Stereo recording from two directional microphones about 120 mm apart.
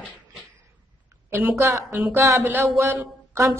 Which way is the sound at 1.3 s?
20° right (ahead or behind).